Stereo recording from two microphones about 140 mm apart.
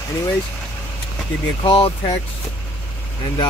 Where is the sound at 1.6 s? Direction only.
40° left (ahead or behind).